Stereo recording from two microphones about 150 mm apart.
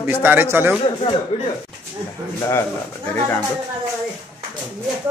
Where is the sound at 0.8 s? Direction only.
40° left (ahead or behind).